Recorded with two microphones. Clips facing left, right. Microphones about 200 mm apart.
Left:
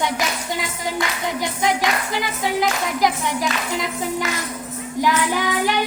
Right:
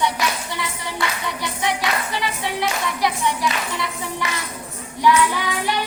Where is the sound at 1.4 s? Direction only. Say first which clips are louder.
Left 4 dB; 45° left (ahead or behind).